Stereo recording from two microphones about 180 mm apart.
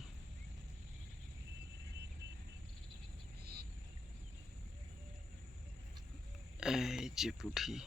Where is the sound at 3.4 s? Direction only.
60° right (ahead or behind).